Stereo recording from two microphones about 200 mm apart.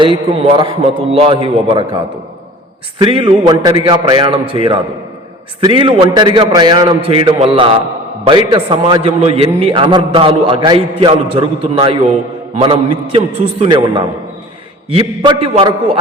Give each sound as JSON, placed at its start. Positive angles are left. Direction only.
{"t": 0.0, "sound": "a man's voice", "side_deg": -25}
{"t": 3.0, "sound": "a man's voice", "side_deg": -25}